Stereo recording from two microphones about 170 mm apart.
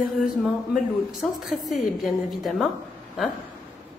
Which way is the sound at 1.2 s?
Centre (ahead or behind).